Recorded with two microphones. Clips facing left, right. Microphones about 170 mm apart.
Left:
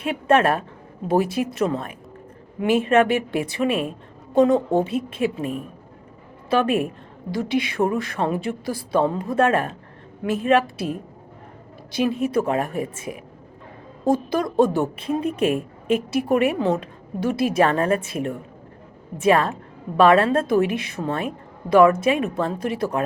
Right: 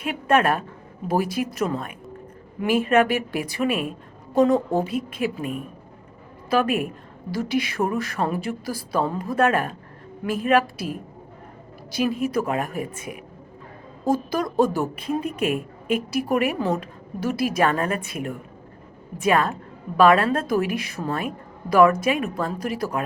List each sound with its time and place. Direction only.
0.0 s a woman's voice: 30° left (ahead or behind)